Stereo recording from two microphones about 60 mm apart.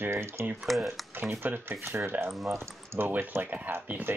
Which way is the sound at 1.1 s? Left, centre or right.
Right.